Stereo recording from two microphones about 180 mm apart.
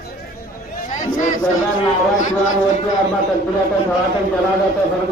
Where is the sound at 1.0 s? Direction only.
45° left (ahead or behind).